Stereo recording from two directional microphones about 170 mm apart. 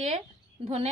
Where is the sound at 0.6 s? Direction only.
40° right (ahead or behind).